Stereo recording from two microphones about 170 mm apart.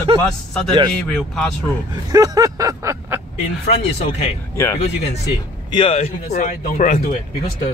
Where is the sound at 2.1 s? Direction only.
20° right (ahead or behind).